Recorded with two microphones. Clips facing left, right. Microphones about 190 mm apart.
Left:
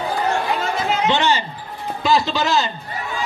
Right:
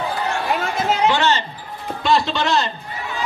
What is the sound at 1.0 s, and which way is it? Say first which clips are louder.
Speech: right 1 dB; 20° left (ahead or behind).